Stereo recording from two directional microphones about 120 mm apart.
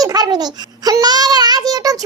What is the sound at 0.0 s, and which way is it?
A child's voice, 30° right (ahead or behind).